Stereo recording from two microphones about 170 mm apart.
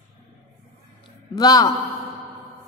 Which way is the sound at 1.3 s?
20° left (ahead or behind).